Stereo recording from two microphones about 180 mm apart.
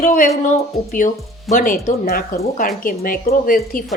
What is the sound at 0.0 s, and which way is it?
A woman's voice, 50° left (ahead or behind).